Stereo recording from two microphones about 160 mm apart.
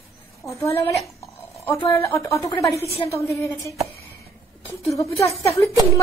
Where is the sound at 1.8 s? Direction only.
20° left (ahead or behind).